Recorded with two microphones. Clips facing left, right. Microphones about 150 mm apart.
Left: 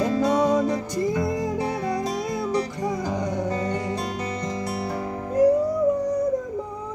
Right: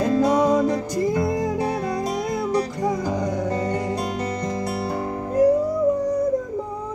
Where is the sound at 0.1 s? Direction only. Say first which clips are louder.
Right 5 dB; 45° right (ahead or behind).